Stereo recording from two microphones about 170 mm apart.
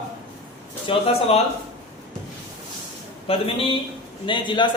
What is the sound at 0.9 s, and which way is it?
Speech, 35° left (ahead or behind).